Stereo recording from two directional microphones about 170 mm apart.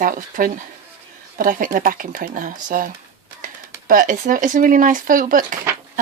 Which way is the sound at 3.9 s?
50° right (ahead or behind).